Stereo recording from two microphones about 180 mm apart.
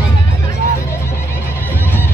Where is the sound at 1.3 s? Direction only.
10° left (ahead or behind).